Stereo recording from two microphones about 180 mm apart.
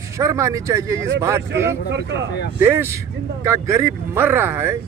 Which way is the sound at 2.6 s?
10° right (ahead or behind).